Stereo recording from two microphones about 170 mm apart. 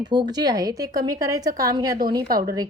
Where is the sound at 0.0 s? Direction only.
25° right (ahead or behind).